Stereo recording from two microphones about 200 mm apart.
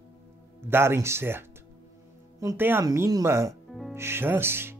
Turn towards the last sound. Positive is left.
turn(degrees=-10)  # may be behind; listen again after turning